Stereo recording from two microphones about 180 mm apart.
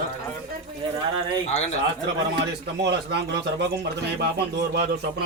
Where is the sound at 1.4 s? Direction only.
40° left (ahead or behind).